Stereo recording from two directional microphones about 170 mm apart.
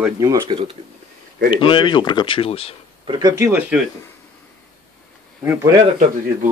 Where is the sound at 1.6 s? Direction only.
30° left (ahead or behind).